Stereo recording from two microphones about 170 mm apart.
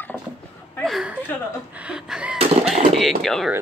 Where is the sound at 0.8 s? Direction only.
Centre (ahead or behind).